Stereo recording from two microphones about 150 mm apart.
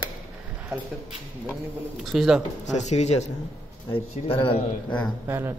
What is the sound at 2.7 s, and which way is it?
Speech, 50° left (ahead or behind).